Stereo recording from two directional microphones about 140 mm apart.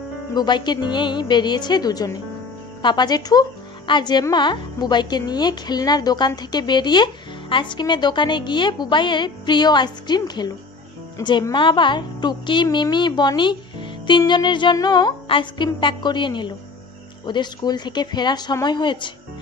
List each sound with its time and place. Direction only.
0.3 s speech: 30° left (ahead or behind)
11.5 s speech: 35° left (ahead or behind)